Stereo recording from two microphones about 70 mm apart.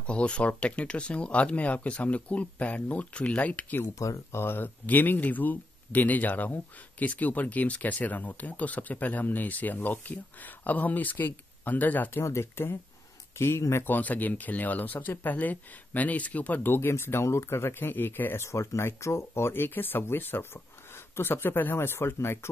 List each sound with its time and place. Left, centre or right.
0.0 s speech: centre
4.0 s speech: left
12.2 s speech: left
13.8 s speech: left